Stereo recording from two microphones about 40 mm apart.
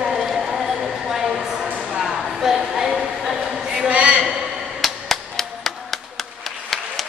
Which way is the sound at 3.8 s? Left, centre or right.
Right.